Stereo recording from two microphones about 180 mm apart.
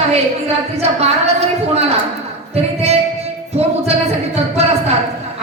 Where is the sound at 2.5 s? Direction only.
35° right (ahead or behind).